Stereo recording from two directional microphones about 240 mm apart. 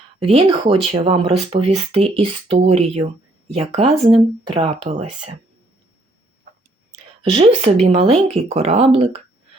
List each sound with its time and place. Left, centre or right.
0.2 s speech: right
7.2 s speech: right